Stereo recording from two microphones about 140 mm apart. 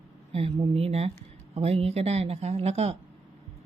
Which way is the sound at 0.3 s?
45° right (ahead or behind).